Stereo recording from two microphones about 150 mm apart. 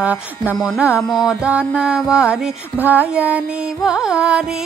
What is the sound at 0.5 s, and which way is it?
Music, centre (ahead or behind).